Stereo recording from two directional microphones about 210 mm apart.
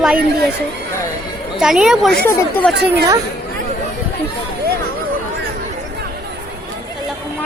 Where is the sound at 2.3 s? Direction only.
10° left (ahead or behind).